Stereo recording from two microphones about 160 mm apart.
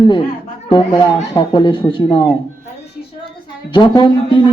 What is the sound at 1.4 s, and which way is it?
Speech, 30° left (ahead or behind).